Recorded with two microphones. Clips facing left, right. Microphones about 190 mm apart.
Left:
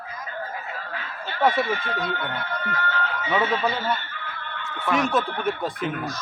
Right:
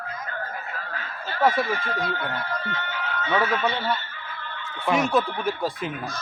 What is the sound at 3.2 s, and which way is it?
Speech, 20° left (ahead or behind).